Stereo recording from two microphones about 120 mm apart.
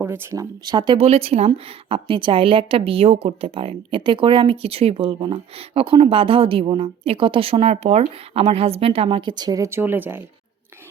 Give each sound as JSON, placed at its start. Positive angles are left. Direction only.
{"t": 0.0, "sound": "speech", "side_deg": -20}
{"t": 0.6, "sound": "speech", "side_deg": -35}
{"t": 0.9, "sound": "speech", "side_deg": -55}
{"t": 1.5, "sound": "a woman's voice", "side_deg": -45}
{"t": 9.6, "sound": "speech", "side_deg": -20}